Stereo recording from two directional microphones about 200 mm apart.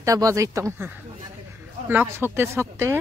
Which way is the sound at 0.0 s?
15° right (ahead or behind).